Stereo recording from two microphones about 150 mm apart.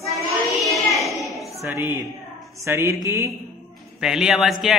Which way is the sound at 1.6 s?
15° right (ahead or behind).